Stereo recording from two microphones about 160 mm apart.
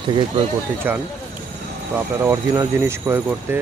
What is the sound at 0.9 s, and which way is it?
Speech, 15° right (ahead or behind).